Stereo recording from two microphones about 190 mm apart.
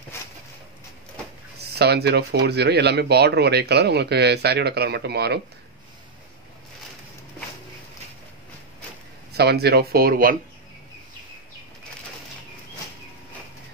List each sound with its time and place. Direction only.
0.1 s a sound: 15° left (ahead or behind)
1.8 s speech: 60° right (ahead or behind)
9.3 s speech: 60° right (ahead or behind)